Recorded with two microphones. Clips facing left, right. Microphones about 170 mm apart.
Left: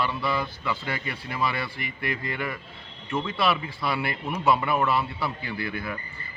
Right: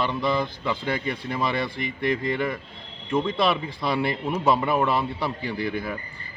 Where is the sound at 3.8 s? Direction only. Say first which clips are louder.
Right 5 dB; 25° right (ahead or behind).